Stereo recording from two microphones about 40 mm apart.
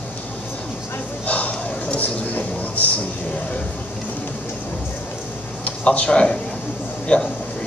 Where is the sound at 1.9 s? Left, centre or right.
Left.